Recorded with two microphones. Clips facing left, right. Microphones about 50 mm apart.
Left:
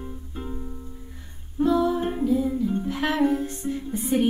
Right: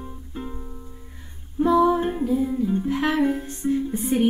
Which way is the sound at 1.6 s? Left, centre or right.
Centre.